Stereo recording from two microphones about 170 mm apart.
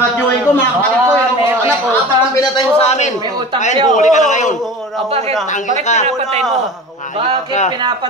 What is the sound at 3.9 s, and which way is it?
Speech, 45° left (ahead or behind).